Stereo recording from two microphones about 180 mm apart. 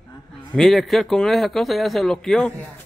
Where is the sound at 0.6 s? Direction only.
Centre (ahead or behind).